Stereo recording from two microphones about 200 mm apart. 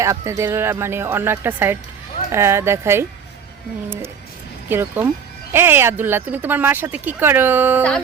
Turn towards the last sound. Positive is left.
turn(degrees=-10)  # may be behind; listen again after turning